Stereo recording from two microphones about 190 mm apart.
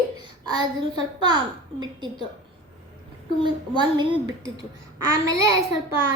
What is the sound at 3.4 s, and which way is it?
A child's voice, 25° right (ahead or behind).